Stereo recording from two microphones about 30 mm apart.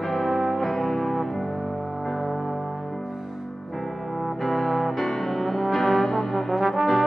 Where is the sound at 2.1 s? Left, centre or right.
Centre.